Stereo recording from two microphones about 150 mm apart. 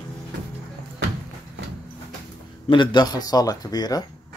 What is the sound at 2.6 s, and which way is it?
Speech, 30° left (ahead or behind).